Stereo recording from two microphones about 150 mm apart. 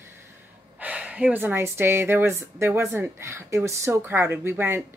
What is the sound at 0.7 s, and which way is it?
Speech, 10° right (ahead or behind).